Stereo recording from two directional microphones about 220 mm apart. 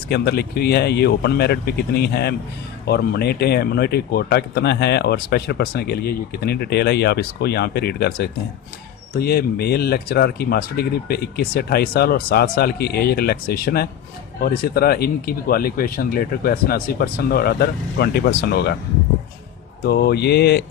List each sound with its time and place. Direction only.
0.1 s speech: 45° left (ahead or behind)
19.8 s speech: 45° left (ahead or behind)